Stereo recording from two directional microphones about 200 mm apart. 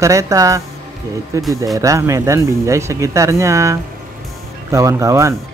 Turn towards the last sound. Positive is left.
turn(degrees=-15)  # may be behind; listen again after turning